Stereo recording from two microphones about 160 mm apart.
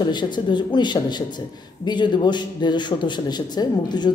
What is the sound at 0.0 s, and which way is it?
A man's voice, 25° left (ahead or behind).